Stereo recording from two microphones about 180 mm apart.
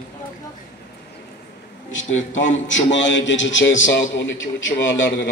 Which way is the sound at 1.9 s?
90° left.